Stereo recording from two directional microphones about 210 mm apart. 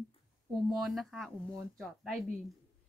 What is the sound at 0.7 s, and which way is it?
Speech, centre (ahead or behind).